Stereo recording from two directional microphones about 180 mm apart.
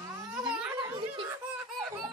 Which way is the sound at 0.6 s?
10° right (ahead or behind).